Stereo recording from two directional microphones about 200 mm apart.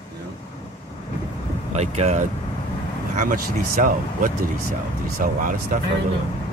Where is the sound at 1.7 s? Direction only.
35° right (ahead or behind).